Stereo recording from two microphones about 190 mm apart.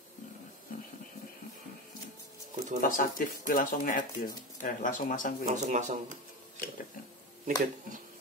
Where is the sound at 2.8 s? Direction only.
45° left (ahead or behind).